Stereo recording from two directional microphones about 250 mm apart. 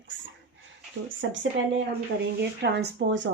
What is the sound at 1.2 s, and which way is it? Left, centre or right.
Speech, right.